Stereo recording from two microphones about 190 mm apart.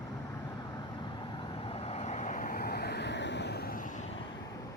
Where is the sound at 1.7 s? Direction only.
30° left (ahead or behind).